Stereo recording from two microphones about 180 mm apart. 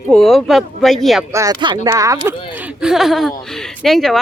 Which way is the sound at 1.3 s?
20° right (ahead or behind).